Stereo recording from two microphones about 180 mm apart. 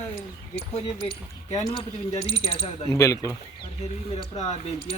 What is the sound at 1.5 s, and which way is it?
Speech, 20° left (ahead or behind).